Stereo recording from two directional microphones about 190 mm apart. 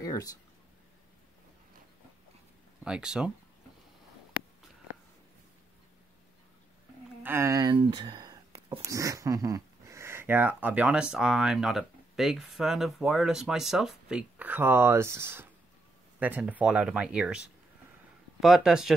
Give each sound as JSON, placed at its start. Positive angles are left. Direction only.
{"t": 0.0, "sound": "speech", "side_deg": 20}
{"t": 2.8, "sound": "speech", "side_deg": -5}
{"t": 7.2, "sound": "speech", "side_deg": -15}
{"t": 18.4, "sound": "speech", "side_deg": 0}